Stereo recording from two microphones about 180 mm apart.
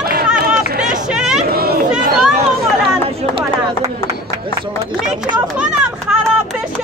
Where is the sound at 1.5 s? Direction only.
60° right (ahead or behind).